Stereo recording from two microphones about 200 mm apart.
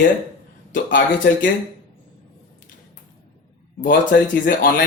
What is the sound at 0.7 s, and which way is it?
Speech, 45° left (ahead or behind).